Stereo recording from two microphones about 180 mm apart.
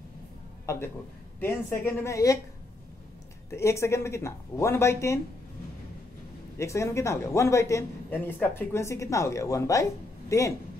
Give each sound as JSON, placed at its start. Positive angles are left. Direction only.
{"t": 0.7, "sound": "a man's voice", "side_deg": 15}
{"t": 3.4, "sound": "a man's voice", "side_deg": 15}
{"t": 6.6, "sound": "a man's voice", "side_deg": 15}